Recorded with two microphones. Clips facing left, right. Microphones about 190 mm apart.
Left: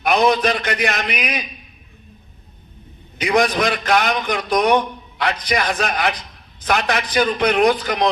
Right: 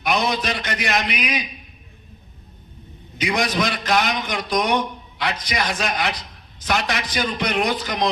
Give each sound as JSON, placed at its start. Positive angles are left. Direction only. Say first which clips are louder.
{"t": 0.0, "sound": "a man's voice", "louder": "left 6 dB", "side_deg": 55}
{"t": 3.2, "sound": "a man's voice", "louder": "left 4 dB", "side_deg": 60}